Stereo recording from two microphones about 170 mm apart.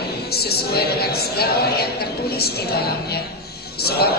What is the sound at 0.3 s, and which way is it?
A woman's voice, 65° left (ahead or behind).